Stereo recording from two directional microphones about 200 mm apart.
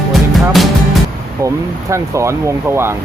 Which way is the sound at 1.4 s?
15° right (ahead or behind).